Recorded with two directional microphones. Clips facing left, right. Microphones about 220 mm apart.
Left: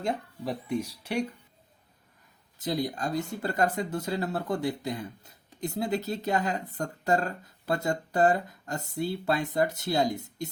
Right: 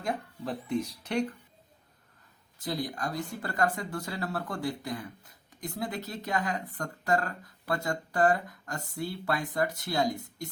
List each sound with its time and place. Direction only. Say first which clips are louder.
0.4 s speech: left 1 dB; 10° left (ahead or behind)
2.6 s speech: left 4 dB; 20° left (ahead or behind)